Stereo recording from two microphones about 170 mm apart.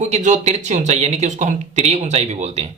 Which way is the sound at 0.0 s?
45° right (ahead or behind).